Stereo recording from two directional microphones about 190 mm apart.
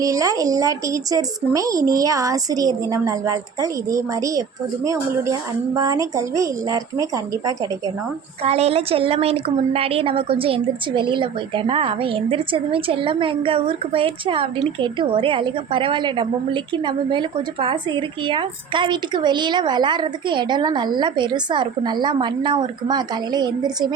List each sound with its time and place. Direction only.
0.0 s speech: 15° right (ahead or behind)
8.4 s a woman's voice: 35° right (ahead or behind)